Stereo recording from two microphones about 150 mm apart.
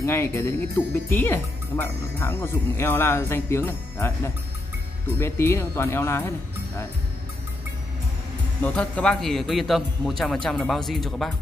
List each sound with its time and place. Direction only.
0.0 s speech: 15° left (ahead or behind)
8.6 s speech: 10° left (ahead or behind)